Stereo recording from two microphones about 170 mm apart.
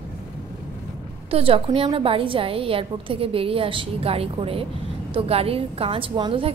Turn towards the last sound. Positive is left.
turn(degrees=-30)  # may be behind; listen again after turning